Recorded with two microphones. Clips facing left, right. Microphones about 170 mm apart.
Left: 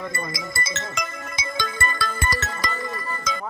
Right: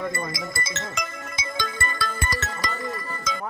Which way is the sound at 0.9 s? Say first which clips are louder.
Left 1 dB; 90° left.